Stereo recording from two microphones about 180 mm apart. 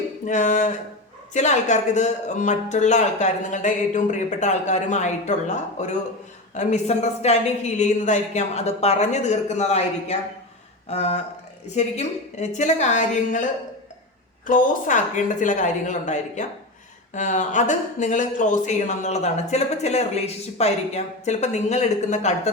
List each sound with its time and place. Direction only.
0.3 s a woman's voice: 45° left (ahead or behind)
14.4 s a woman's voice: 45° left (ahead or behind)